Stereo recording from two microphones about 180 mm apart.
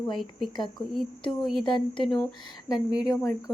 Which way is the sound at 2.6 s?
5° right (ahead or behind).